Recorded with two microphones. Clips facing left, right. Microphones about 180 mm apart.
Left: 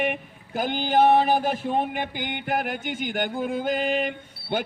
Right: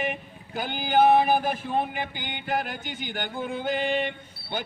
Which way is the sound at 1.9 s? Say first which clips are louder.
Left 4 dB; 50° left (ahead or behind).